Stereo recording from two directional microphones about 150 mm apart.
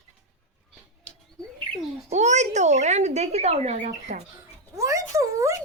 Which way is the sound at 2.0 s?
50° right (ahead or behind).